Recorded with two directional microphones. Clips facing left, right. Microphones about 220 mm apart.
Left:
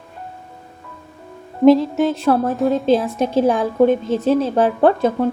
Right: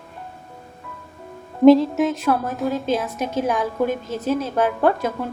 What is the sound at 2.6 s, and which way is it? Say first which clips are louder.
Music: left 6 dB; centre (ahead or behind).